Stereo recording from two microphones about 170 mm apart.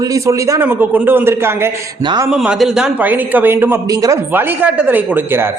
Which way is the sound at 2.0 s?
25° right (ahead or behind).